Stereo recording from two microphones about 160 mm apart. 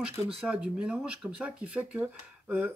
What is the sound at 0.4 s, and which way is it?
Speech, 5° right (ahead or behind).